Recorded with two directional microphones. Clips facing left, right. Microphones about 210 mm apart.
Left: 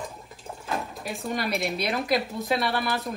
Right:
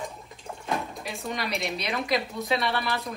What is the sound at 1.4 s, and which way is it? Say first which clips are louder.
Speech: left 3 dB; centre (ahead or behind).